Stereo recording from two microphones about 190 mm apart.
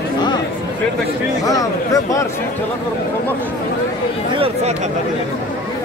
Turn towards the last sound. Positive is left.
turn(degrees=-30)  # may be behind; listen again after turning